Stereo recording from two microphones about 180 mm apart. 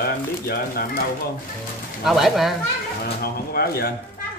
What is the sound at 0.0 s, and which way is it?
Speech, 60° left (ahead or behind).